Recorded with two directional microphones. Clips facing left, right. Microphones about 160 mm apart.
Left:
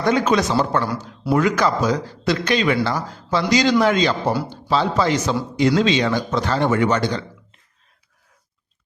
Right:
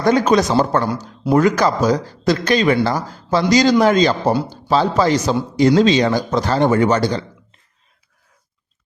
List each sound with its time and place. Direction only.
0.0 s speech: 40° right (ahead or behind)